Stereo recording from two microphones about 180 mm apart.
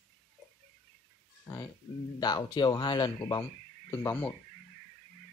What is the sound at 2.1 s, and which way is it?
Speech, 25° left (ahead or behind).